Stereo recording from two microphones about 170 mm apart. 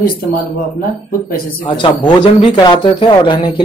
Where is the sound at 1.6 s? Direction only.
30° left (ahead or behind).